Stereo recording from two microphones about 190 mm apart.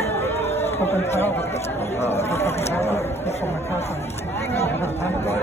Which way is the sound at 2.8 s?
35° left (ahead or behind).